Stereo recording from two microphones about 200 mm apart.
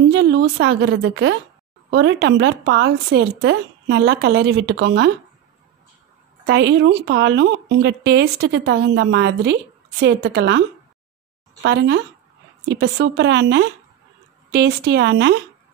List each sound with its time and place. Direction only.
0.1 s speech: 60° right (ahead or behind)
6.4 s speech: 60° right (ahead or behind)
11.6 s speech: 60° right (ahead or behind)